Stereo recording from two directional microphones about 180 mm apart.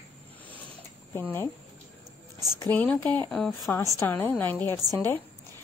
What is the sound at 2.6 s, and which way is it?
Speech, 10° left (ahead or behind).